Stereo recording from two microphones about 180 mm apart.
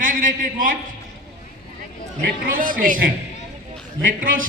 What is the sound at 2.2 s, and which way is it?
Speech, 50° right (ahead or behind).